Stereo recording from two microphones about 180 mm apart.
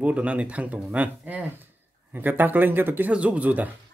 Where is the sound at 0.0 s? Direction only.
5° right (ahead or behind).